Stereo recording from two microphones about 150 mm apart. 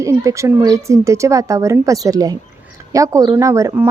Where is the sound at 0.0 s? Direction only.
20° right (ahead or behind).